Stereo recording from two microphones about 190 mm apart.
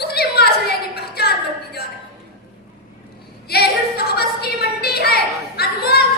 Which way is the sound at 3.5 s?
55° left (ahead or behind).